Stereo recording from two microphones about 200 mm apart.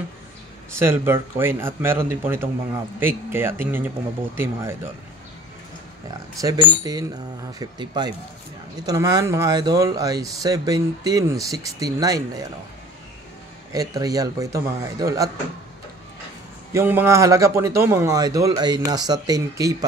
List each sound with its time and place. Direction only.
0.7 s speech: 10° right (ahead or behind)
6.4 s speech: 20° right (ahead or behind)
13.7 s speech: 20° right (ahead or behind)
16.7 s speech: 10° right (ahead or behind)